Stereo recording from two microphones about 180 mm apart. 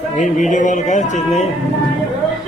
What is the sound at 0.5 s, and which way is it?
Speech, 45° left (ahead or behind).